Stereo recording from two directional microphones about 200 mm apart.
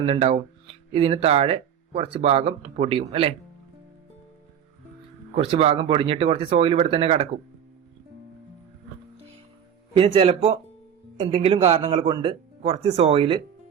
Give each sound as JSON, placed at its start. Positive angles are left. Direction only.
{"t": 0.0, "sound": "speech", "side_deg": -30}
{"t": 5.3, "sound": "speech", "side_deg": -30}
{"t": 9.9, "sound": "speech", "side_deg": -25}